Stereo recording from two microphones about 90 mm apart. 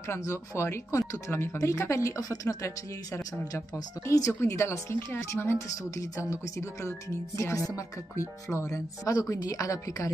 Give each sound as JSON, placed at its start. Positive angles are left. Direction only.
{"t": 0.1, "sound": "speech", "side_deg": 30}